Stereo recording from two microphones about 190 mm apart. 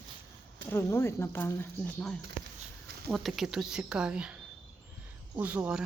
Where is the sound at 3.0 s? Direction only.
Centre (ahead or behind).